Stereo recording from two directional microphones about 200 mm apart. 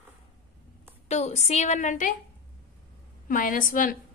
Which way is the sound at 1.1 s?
35° left (ahead or behind).